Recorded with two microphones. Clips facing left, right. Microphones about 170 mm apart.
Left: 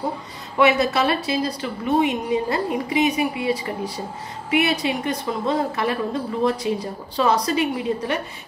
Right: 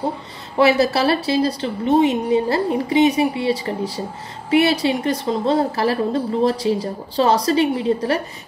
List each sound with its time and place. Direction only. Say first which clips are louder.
0.6 s a woman's voice: right 2 dB; 30° right (ahead or behind)